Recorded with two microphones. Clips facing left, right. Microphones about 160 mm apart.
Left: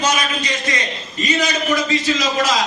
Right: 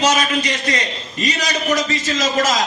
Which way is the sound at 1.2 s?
40° right (ahead or behind).